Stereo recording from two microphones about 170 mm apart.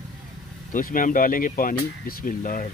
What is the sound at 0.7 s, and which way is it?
Speech, 55° left (ahead or behind).